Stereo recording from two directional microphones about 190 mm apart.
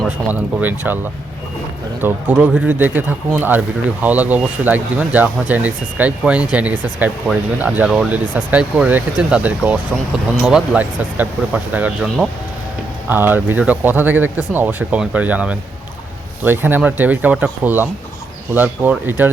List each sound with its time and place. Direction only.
0.0 s speech: 10° right (ahead or behind)
2.0 s speech: 10° right (ahead or behind)